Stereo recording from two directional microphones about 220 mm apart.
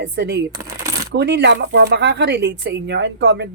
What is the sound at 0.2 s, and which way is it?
Speech, 50° right (ahead or behind).